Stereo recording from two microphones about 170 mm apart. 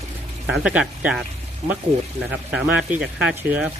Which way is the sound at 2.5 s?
5° right (ahead or behind).